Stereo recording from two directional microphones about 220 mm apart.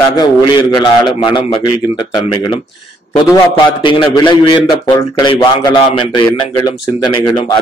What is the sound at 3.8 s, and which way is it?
Speech, 20° left (ahead or behind).